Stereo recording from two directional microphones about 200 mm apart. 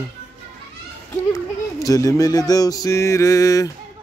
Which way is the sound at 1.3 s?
15° left (ahead or behind).